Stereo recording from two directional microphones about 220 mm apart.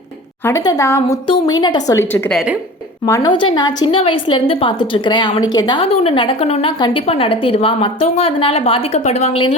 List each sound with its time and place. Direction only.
0.4 s a woman's voice: 15° left (ahead or behind)